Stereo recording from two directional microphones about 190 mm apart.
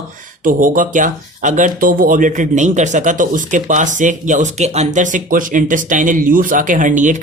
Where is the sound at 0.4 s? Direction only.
45° right (ahead or behind).